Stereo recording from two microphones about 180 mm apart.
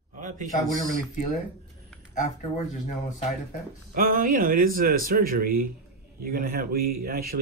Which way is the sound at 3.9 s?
50° right (ahead or behind).